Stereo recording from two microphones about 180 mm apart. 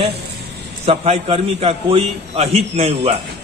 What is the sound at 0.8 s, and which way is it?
A man's voice, 35° right (ahead or behind).